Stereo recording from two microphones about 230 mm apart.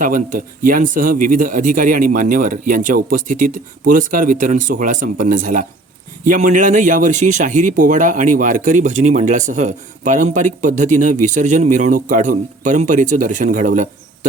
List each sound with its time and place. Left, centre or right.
0.0 s speech: right